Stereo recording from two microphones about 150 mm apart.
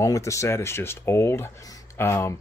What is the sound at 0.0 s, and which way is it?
Speech, 20° left (ahead or behind).